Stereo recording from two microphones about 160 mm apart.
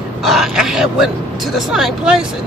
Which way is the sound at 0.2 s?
Centre (ahead or behind).